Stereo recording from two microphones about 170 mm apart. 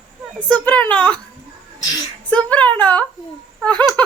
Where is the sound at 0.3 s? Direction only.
10° left (ahead or behind).